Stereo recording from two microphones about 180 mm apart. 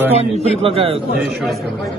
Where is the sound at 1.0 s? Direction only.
Centre (ahead or behind).